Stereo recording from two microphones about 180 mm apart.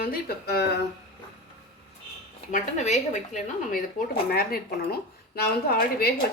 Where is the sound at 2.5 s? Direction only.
40° left (ahead or behind).